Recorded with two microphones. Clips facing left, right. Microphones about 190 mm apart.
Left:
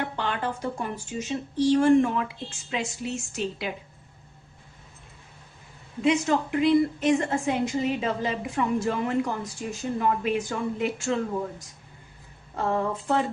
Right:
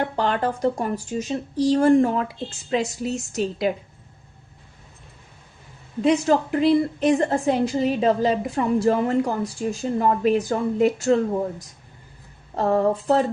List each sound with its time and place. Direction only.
0.0 s speech: 40° right (ahead or behind)
6.0 s speech: 35° right (ahead or behind)
12.5 s speech: 35° right (ahead or behind)